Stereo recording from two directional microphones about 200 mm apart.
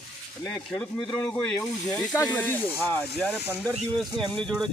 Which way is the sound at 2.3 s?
10° left (ahead or behind).